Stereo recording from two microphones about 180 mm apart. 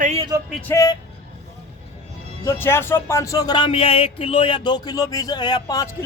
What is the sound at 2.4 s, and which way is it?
Speech, 15° left (ahead or behind).